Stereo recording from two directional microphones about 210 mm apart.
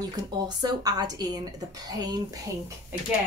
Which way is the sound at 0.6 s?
20° right (ahead or behind).